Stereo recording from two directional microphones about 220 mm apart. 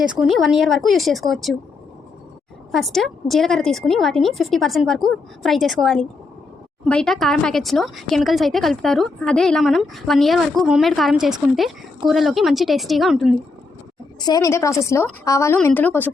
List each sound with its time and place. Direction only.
0.2 s speech: centre (ahead or behind)
2.7 s speech: centre (ahead or behind)
14.2 s a woman's voice: 20° left (ahead or behind)